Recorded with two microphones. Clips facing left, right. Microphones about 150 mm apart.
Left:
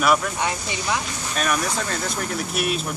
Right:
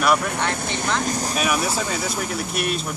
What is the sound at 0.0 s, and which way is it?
Speech, centre (ahead or behind).